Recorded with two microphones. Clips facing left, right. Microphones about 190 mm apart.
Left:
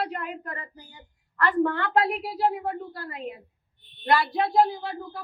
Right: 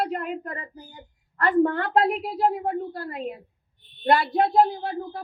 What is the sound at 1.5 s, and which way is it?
A woman's voice, 50° right (ahead or behind).